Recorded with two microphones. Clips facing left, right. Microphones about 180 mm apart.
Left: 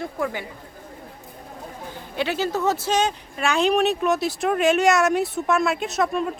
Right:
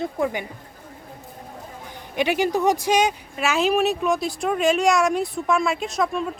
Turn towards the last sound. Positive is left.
turn(degrees=0)  # may be behind; listen again after turning